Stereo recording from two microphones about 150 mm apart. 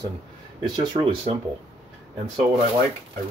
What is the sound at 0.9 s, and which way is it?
Speech, 35° right (ahead or behind).